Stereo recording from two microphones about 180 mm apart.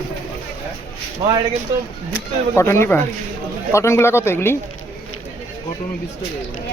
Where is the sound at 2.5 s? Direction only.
15° left (ahead or behind).